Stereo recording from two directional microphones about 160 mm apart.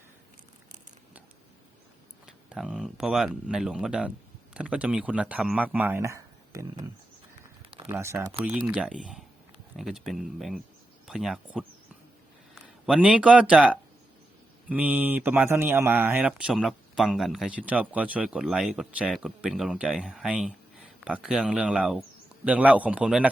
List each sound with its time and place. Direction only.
2.2 s speech: 5° right (ahead or behind); by 6.7 s 20° right (ahead or behind)
7.6 s a sound: 35° right (ahead or behind)
7.9 s speech: 15° right (ahead or behind)